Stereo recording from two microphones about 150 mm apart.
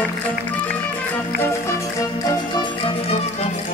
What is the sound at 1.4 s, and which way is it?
Music, 20° left (ahead or behind).